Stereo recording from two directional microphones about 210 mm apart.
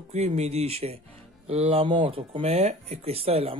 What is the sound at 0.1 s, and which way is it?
Speech, 30° right (ahead or behind).